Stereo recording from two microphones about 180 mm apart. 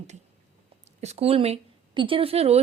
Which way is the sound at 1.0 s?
35° right (ahead or behind).